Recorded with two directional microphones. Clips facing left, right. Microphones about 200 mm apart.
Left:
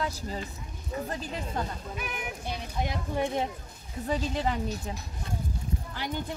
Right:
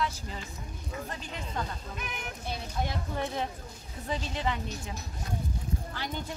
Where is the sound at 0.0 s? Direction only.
40° left (ahead or behind).